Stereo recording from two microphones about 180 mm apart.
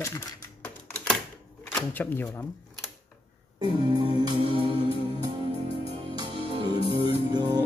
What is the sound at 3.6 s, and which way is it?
Music, 25° right (ahead or behind).